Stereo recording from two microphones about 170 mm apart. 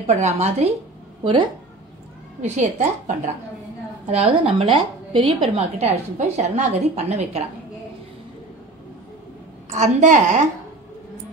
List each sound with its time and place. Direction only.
0.0 s a woman's voice: 40° right (ahead or behind)
2.4 s a woman's voice: 45° right (ahead or behind)
9.7 s a woman's voice: 45° right (ahead or behind)